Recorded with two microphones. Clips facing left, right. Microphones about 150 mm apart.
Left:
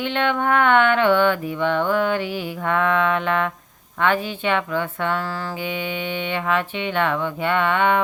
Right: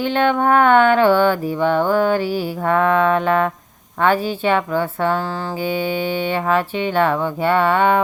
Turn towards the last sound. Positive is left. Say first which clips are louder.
# right 4 dB
turn(degrees=-35)  # may be behind; listen again after turning